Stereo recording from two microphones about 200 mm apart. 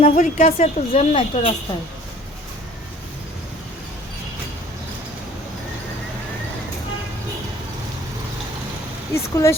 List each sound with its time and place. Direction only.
0.0 s a woman's voice: 35° left (ahead or behind)
9.1 s speech: 15° left (ahead or behind)